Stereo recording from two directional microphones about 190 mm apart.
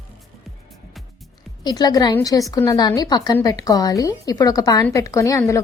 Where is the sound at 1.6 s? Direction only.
20° left (ahead or behind).